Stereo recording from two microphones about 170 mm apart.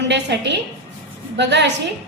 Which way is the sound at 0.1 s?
90° right.